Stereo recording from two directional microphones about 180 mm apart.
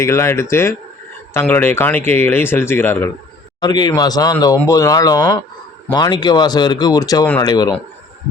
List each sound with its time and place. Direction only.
0.0 s speech: 15° left (ahead or behind)
3.6 s speech: 25° left (ahead or behind)